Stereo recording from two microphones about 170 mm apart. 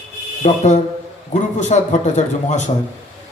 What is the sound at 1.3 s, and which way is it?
Speech, 45° left (ahead or behind).